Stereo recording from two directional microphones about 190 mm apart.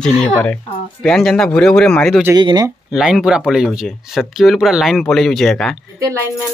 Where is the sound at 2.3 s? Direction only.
20° right (ahead or behind).